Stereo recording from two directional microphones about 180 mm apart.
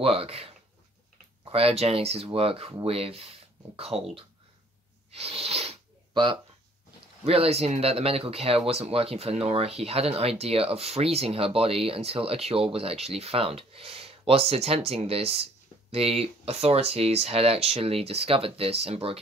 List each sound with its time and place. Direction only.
0.0 s speech: 35° right (ahead or behind)
1.5 s speech: 30° right (ahead or behind)
5.1 s sneeze: 35° right (ahead or behind)
7.2 s speech: 35° right (ahead or behind)